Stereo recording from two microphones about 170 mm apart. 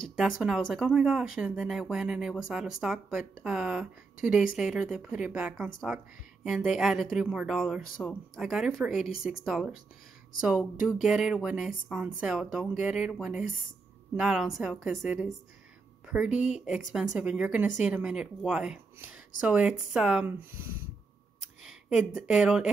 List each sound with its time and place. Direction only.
0.4 s speech: centre (ahead or behind)